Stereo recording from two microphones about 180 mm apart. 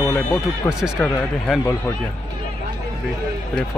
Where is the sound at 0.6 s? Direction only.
15° left (ahead or behind).